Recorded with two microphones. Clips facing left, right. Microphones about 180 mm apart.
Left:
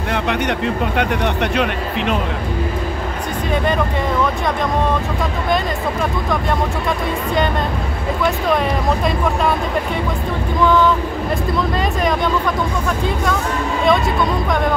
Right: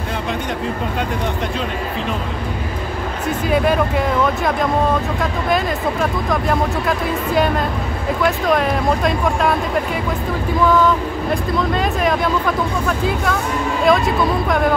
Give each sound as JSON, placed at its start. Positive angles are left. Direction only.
{"t": 0.9, "sound": "speech", "side_deg": 70}
{"t": 3.4, "sound": "speech", "side_deg": -5}
{"t": 8.2, "sound": "speech", "side_deg": 0}
{"t": 11.5, "sound": "speech", "side_deg": 0}